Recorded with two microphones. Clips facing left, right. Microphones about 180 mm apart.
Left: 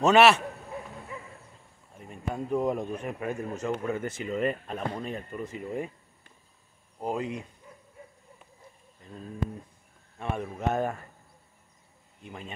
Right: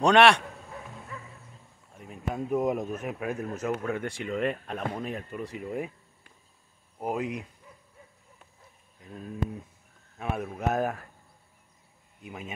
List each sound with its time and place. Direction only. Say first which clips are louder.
0.0 s speech: even; 5° left (ahead or behind)
0.7 s bow-wow: left 3 dB; 15° left (ahead or behind)
2.0 s speech: right 1 dB; centre (ahead or behind)
5.5 s a sound: even; 5° right (ahead or behind)
7.0 s speech: right 1 dB; 5° right (ahead or behind)
9.0 s speech: right 1 dB; 10° right (ahead or behind)
12.2 s speech: right 2 dB; 5° right (ahead or behind)